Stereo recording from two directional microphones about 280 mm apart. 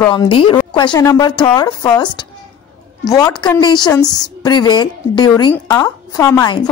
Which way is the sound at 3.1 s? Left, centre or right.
Centre.